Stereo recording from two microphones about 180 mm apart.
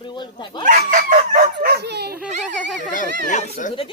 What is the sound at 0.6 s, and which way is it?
Speech, 45° right (ahead or behind).